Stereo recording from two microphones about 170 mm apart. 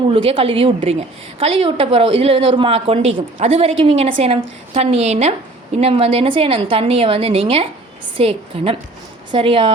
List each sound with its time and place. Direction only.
0.1 s a woman's voice: 30° right (ahead or behind)